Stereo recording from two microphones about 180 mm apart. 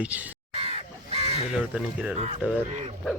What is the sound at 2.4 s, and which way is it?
Speech, 10° right (ahead or behind).